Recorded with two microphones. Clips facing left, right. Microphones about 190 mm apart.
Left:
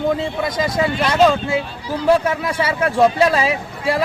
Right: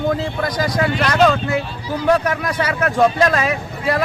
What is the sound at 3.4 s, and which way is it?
Speech, 30° left (ahead or behind).